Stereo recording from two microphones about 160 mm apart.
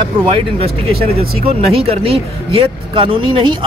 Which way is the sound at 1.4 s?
35° right (ahead or behind).